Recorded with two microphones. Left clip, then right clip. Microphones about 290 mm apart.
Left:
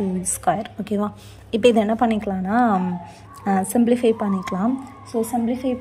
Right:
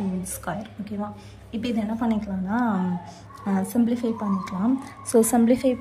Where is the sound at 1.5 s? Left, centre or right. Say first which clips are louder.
Left 13 dB; centre.